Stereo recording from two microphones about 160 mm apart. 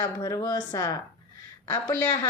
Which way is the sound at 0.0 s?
25° left (ahead or behind).